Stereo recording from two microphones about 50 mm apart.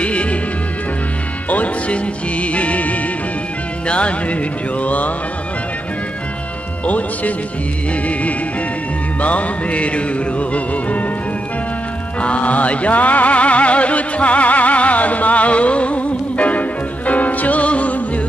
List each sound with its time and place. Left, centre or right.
0.0 s music: left
1.5 s music: left
6.9 s speech: left
7.9 s music: left
12.2 s music: left